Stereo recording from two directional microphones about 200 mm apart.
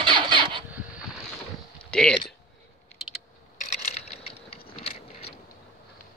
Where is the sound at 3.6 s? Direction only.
35° left (ahead or behind).